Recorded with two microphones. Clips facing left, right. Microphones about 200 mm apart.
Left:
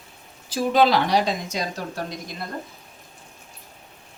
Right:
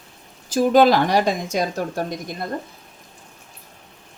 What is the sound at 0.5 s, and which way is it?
Speech, 50° right (ahead or behind).